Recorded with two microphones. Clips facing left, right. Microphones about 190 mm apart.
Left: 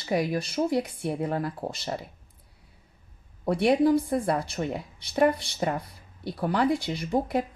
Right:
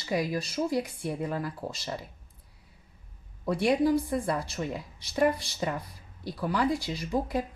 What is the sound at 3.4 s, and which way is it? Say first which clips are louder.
A woman's voice: left 3 dB; 60° left (ahead or behind).